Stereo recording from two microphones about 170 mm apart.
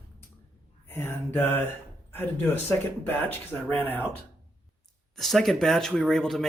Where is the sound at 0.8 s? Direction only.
15° left (ahead or behind).